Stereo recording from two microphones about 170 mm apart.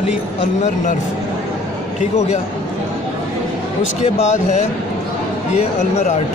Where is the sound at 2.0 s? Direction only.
40° left (ahead or behind).